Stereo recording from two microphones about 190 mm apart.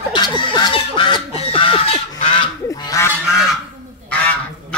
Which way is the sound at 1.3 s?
30° left (ahead or behind).